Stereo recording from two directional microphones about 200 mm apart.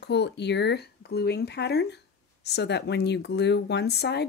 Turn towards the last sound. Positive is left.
turn(degrees=55)  # may be behind; listen again after turning